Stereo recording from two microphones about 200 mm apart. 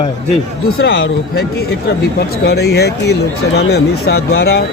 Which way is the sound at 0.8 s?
70° left (ahead or behind).